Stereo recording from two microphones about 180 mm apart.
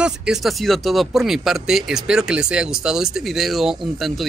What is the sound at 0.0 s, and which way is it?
Speech, 5° right (ahead or behind).